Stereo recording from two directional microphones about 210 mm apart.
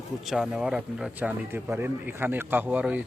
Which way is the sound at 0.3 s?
Centre (ahead or behind).